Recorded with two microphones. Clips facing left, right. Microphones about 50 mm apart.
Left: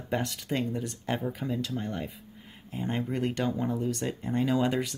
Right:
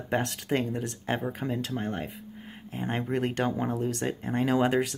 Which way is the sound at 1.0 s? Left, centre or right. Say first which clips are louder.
Right 1 dB; right.